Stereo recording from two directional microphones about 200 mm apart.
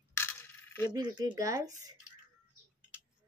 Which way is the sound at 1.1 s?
15° right (ahead or behind).